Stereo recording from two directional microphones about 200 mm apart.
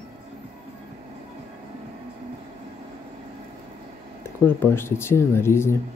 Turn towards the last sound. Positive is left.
turn(degrees=10)  # may be behind; listen again after turning